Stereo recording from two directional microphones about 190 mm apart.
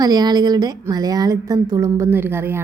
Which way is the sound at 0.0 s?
20° right (ahead or behind).